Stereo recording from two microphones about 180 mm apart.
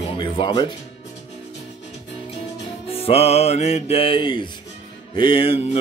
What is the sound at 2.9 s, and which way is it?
Music, 30° left (ahead or behind).